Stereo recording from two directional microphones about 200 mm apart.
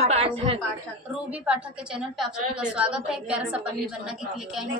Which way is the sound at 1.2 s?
5° right (ahead or behind).